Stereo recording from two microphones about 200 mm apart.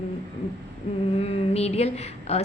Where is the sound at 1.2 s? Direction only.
30° left (ahead or behind).